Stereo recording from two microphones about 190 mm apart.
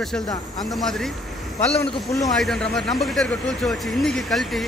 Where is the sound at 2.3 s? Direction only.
Centre (ahead or behind).